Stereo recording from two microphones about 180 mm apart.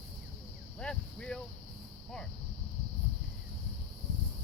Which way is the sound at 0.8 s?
5° left (ahead or behind).